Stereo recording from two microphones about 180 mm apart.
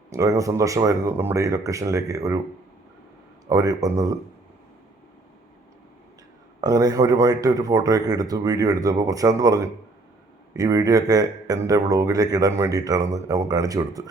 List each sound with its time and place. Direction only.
0.1 s speech: 15° right (ahead or behind)
3.4 s speech: 20° right (ahead or behind)
6.6 s speech: 20° right (ahead or behind)